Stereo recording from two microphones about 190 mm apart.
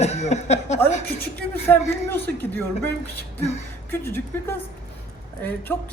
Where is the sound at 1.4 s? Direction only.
10° left (ahead or behind).